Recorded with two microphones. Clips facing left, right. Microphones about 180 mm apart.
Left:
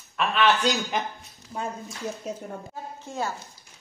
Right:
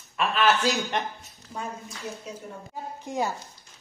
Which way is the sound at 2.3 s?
45° left (ahead or behind).